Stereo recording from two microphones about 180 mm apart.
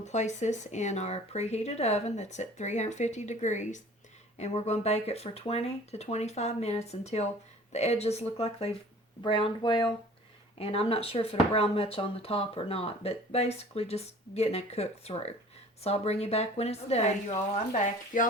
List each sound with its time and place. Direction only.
0.0 s speech: 40° left (ahead or behind)